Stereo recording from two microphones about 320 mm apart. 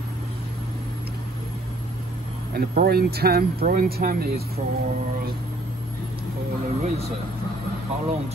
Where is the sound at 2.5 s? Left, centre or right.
Right.